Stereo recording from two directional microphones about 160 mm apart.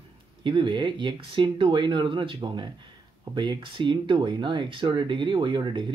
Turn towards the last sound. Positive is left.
turn(degrees=-30)  # may be behind; listen again after turning